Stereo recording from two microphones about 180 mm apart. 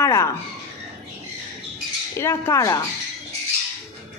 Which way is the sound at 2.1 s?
15° left (ahead or behind).